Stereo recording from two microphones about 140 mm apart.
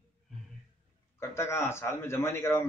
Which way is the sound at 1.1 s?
20° left (ahead or behind).